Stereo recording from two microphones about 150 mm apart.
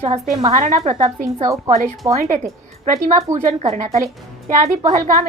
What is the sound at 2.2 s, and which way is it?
Speech, 55° right (ahead or behind).